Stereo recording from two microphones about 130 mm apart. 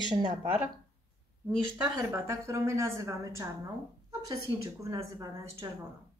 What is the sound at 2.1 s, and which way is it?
A woman's voice, 20° right (ahead or behind).